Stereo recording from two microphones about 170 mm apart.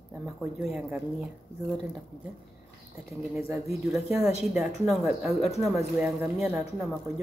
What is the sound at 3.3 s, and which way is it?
Speech, 15° right (ahead or behind).